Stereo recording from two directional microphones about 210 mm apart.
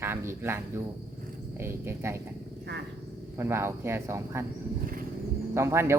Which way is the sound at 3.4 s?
10° right (ahead or behind).